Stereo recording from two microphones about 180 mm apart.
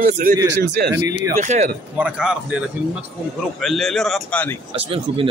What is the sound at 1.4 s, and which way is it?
Speech, 45° right (ahead or behind).